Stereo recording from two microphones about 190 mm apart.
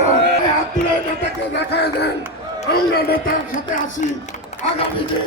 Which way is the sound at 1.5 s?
60° left (ahead or behind).